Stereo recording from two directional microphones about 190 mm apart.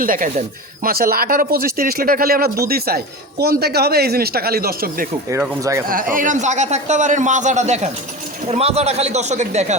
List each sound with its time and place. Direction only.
0.0 s speech: 45° right (ahead or behind)
5.3 s speech: 15° right (ahead or behind)
5.9 s a man's voice: 45° right (ahead or behind)